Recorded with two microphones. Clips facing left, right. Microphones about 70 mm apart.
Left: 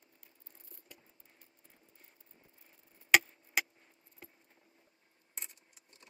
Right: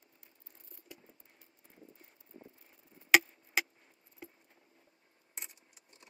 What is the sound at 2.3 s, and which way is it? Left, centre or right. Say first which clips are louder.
Vehicle: right 14 dB; right.